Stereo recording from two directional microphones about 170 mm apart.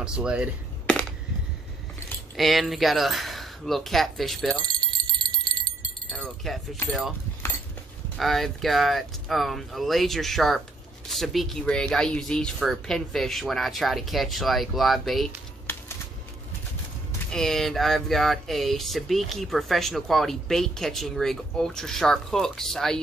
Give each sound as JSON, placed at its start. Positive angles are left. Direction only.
{"t": 0.0, "sound": "speech", "side_deg": -5}
{"t": 2.3, "sound": "speech", "side_deg": 0}
{"t": 4.7, "sound": "jingle bell", "side_deg": -25}
{"t": 6.4, "sound": "speech", "side_deg": 0}
{"t": 8.2, "sound": "speech", "side_deg": 0}
{"t": 17.3, "sound": "speech", "side_deg": 0}